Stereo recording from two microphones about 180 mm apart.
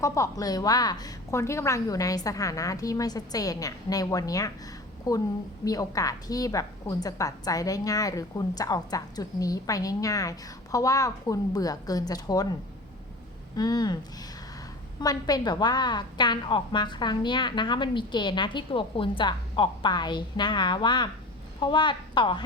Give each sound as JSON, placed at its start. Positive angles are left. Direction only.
{"t": 0.0, "sound": "a woman's voice", "side_deg": 15}
{"t": 13.6, "sound": "a woman's voice", "side_deg": 20}
{"t": 15.0, "sound": "a woman's voice", "side_deg": 20}